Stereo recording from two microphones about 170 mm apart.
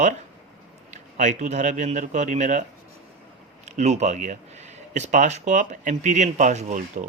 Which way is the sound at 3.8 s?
45° right (ahead or behind).